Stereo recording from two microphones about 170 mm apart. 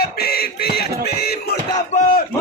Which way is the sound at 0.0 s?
65° left (ahead or behind).